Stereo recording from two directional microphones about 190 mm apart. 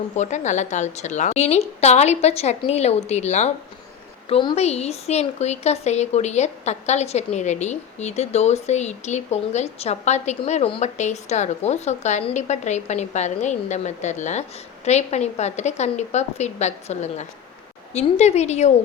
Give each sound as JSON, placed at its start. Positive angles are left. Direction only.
{"t": 0.2, "sound": "a woman's voice", "side_deg": 40}